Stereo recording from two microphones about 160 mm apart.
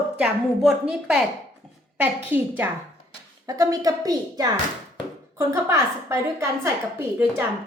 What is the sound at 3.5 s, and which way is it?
A woman's voice, 20° right (ahead or behind).